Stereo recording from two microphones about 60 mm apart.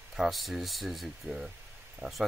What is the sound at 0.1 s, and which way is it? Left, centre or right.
Speech, centre.